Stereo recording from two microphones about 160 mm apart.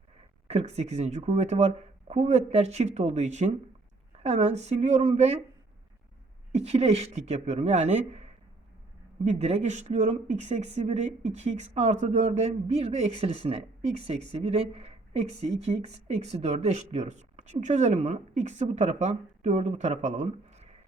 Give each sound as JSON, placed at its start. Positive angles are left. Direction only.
{"t": 0.4, "sound": "speech", "side_deg": -40}
{"t": 6.5, "sound": "speech", "side_deg": -40}